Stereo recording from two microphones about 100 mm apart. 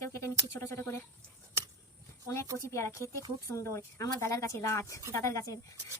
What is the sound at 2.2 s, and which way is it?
Speech, 30° left (ahead or behind).